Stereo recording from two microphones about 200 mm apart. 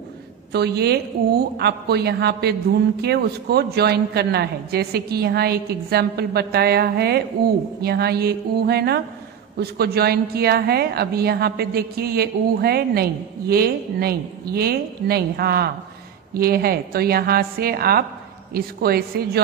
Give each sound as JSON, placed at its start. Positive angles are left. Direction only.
{"t": 0.5, "sound": "a woman's voice", "side_deg": -55}